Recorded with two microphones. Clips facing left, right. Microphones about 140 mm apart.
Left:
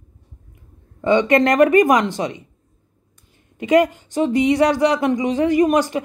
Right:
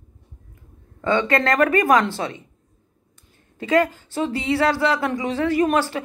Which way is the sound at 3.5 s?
20° left (ahead or behind).